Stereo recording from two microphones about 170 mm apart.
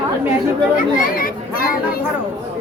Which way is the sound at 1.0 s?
55° left (ahead or behind).